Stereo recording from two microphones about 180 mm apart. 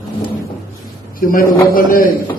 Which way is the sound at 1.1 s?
50° left (ahead or behind).